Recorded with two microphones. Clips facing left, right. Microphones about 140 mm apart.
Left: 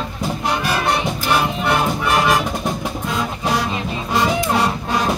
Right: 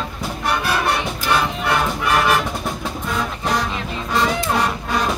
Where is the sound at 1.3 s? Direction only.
20° left (ahead or behind).